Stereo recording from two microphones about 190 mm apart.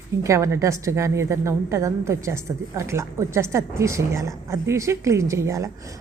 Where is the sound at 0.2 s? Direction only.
15° right (ahead or behind).